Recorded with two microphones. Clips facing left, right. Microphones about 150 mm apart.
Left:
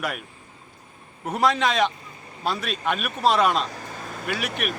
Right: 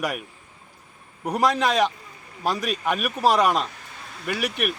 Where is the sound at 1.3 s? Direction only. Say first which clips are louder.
Right 1 dB; 10° right (ahead or behind).